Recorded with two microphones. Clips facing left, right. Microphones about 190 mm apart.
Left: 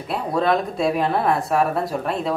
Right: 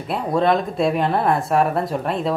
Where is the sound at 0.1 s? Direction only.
Centre (ahead or behind).